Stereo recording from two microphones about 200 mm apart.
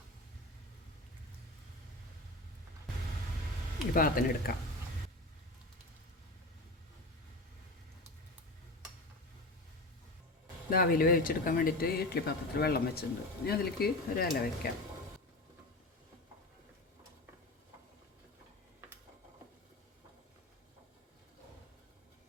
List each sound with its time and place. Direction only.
3.9 s speech: 45° left (ahead or behind)
10.7 s speech: 45° left (ahead or behind)